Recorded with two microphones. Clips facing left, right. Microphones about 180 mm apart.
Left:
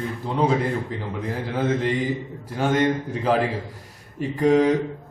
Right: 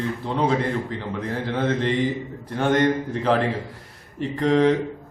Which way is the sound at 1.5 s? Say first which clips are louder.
Even; 5° left (ahead or behind).